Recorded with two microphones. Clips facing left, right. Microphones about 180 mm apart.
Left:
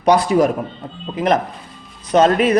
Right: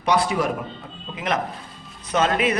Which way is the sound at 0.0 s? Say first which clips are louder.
Left 7 dB; 40° left (ahead or behind).